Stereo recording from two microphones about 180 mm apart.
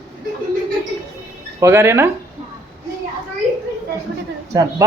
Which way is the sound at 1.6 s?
15° right (ahead or behind).